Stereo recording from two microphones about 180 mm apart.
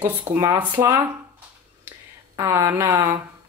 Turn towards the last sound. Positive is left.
turn(degrees=-20)  # may be behind; listen again after turning